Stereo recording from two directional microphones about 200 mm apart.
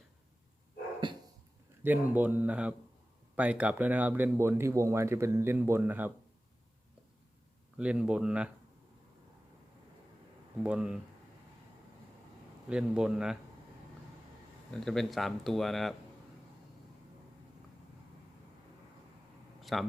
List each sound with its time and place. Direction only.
1.0 s dog: 25° right (ahead or behind)
1.8 s speech: 10° right (ahead or behind)
7.8 s speech: 5° right (ahead or behind)
10.6 s speech: 5° right (ahead or behind)
12.6 s speech: 5° right (ahead or behind)
14.7 s speech: centre (ahead or behind)
19.6 s a man's voice: centre (ahead or behind)